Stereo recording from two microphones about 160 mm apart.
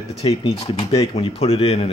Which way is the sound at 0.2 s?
35° left (ahead or behind).